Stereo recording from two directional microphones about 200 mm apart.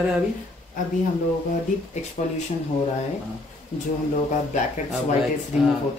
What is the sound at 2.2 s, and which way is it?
Speech, 35° left (ahead or behind).